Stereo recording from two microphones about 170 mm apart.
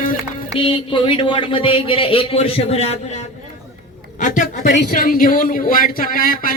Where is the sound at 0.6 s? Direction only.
30° left (ahead or behind).